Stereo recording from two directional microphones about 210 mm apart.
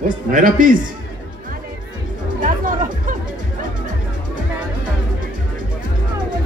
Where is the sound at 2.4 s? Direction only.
40° right (ahead or behind).